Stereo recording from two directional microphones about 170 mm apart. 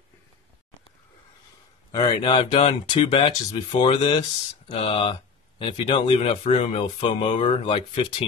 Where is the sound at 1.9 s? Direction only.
25° left (ahead or behind).